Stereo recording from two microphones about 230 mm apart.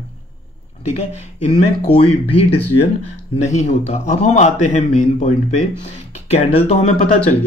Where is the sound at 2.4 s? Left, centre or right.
Left.